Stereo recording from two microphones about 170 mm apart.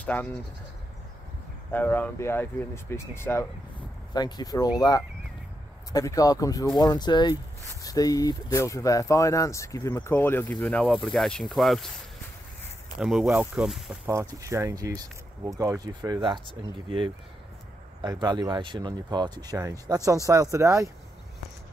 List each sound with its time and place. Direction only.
0.0 s speech: 10° left (ahead or behind)
1.7 s speech: 10° left (ahead or behind)
13.0 s speech: centre (ahead or behind)
14.0 s speech: 15° right (ahead or behind)